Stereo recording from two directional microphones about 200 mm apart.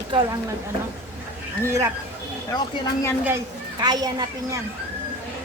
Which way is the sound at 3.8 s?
20° right (ahead or behind).